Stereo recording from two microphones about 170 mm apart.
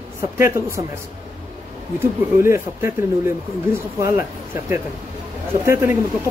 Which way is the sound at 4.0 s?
15° right (ahead or behind).